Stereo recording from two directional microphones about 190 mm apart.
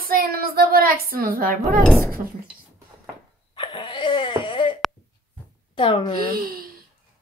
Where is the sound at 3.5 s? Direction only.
25° left (ahead or behind).